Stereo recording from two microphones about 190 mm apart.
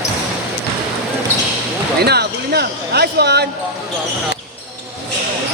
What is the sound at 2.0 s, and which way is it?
Speech, 55° right (ahead or behind).